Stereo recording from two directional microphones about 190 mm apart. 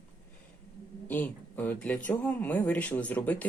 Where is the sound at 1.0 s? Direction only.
10° left (ahead or behind).